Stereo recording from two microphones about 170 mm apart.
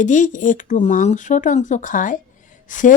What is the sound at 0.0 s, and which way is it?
Speech, 50° left (ahead or behind).